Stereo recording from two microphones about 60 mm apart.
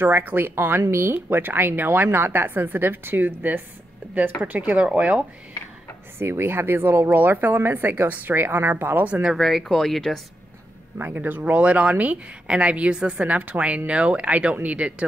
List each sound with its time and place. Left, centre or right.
0.0 s speech: right
6.1 s speech: right
9.4 s speech: centre
11.0 s speech: right